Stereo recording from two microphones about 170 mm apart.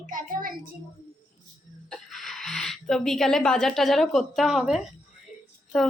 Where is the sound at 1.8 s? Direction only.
Centre (ahead or behind).